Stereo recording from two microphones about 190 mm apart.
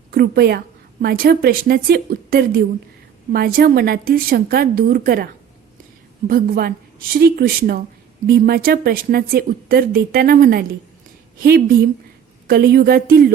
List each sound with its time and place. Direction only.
0.1 s a woman's voice: 55° right (ahead or behind)